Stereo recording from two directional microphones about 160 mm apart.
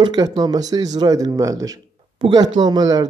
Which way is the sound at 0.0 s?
25° right (ahead or behind).